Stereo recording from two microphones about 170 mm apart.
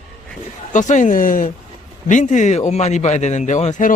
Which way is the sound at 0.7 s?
45° left (ahead or behind).